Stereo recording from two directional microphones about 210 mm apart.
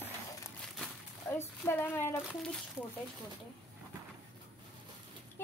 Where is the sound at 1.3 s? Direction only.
10° left (ahead or behind).